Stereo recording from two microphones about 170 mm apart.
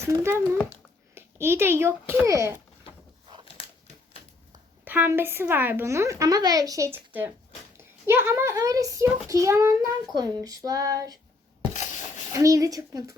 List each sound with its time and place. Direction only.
0.0 s a woman's voice: 15° right (ahead or behind)
4.9 s a woman's voice: 10° right (ahead or behind)
11.7 s rub: 45° left (ahead or behind)
12.3 s a child's voice: 20° right (ahead or behind)